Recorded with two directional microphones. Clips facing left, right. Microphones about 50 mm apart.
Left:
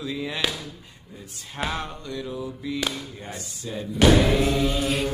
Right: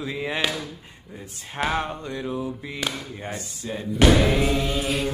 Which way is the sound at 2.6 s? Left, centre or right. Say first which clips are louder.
Left 5 dB; right.